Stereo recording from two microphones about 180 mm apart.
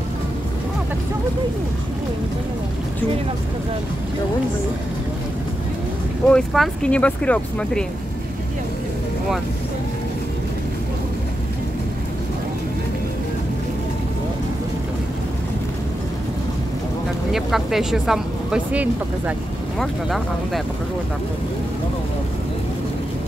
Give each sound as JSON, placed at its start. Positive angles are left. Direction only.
{"t": 6.2, "sound": "speech", "side_deg": 5}
{"t": 17.3, "sound": "speech", "side_deg": 0}